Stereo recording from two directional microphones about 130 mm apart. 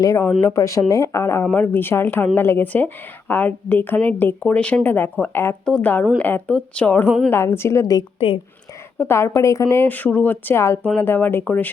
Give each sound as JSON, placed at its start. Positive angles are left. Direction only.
{"t": 0.0, "sound": "speech", "side_deg": 25}